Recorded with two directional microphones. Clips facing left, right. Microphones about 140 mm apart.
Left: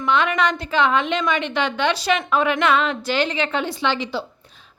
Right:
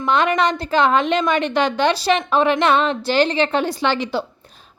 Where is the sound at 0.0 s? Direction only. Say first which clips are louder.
Right 2 dB; 40° right (ahead or behind).